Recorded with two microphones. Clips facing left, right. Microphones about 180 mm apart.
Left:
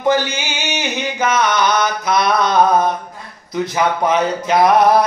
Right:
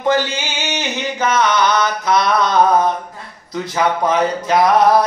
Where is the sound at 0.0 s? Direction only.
15° left (ahead or behind).